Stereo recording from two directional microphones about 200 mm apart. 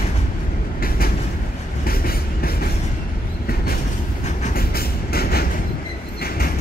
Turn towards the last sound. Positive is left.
turn(degrees=50)  # may be behind; listen again after turning